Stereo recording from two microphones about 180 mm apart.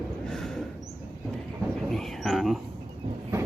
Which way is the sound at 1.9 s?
Centre (ahead or behind).